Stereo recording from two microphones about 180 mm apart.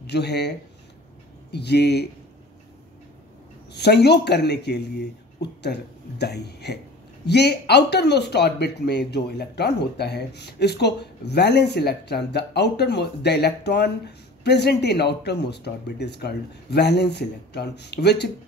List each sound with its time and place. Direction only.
0.0 s speech: 65° left (ahead or behind)
3.7 s speech: 65° left (ahead or behind)